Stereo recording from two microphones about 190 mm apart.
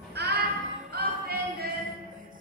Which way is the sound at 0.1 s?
60° right (ahead or behind).